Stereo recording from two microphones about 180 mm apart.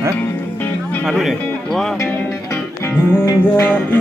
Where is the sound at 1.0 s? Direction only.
Centre (ahead or behind).